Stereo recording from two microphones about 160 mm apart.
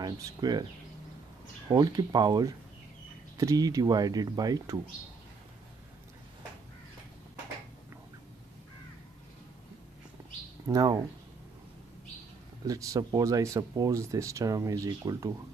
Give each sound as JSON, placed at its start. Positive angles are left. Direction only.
{"t": 0.0, "sound": "speech", "side_deg": -25}
{"t": 1.7, "sound": "speech", "side_deg": -25}
{"t": 10.7, "sound": "speech", "side_deg": -25}
{"t": 12.6, "sound": "speech", "side_deg": -20}